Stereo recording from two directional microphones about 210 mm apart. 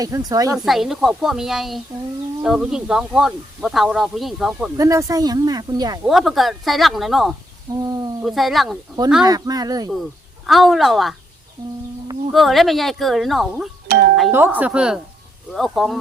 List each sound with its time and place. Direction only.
0.0 s speech: 15° right (ahead or behind)
0.5 s speech: centre (ahead or behind)
4.8 s speech: 15° right (ahead or behind)
6.1 s speech: centre (ahead or behind)
7.8 s speech: 15° right (ahead or behind)
8.2 s speech: centre (ahead or behind)
9.2 s speech: 20° right (ahead or behind)
10.4 s speech: centre (ahead or behind)
12.3 s speech: centre (ahead or behind)
13.8 s doorbell: 45° right (ahead or behind)
14.3 s speech: 10° right (ahead or behind)